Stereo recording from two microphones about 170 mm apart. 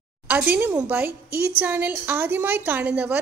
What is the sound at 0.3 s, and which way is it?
Speech, 10° right (ahead or behind).